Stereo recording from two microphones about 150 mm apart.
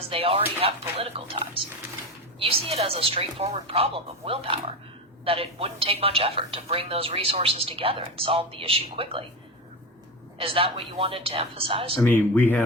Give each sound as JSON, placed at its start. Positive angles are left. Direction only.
{"t": 0.1, "sound": "a woman's voice", "side_deg": -40}
{"t": 10.3, "sound": "a woman's voice", "side_deg": -35}
{"t": 12.0, "sound": "speech", "side_deg": 10}